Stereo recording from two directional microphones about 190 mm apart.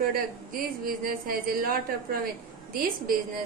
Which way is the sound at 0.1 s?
50° right (ahead or behind).